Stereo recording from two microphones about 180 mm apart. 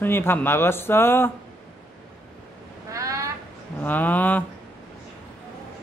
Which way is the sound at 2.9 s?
15° right (ahead or behind).